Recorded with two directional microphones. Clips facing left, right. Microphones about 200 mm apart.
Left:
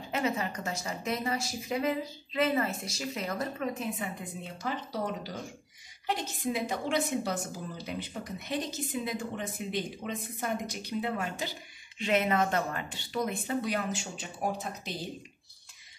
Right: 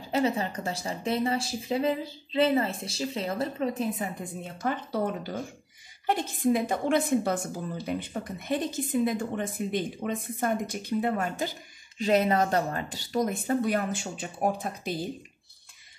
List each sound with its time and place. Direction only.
0.1 s a woman's voice: 30° right (ahead or behind); by 15.0 s 55° right (ahead or behind)